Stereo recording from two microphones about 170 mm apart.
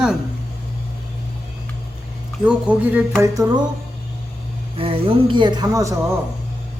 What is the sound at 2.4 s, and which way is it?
Speech, 5° right (ahead or behind).